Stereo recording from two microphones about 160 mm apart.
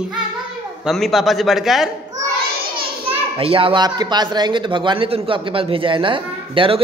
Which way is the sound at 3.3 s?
35° right (ahead or behind).